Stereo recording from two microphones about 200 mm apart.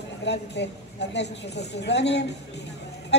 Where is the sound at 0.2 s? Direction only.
60° left (ahead or behind).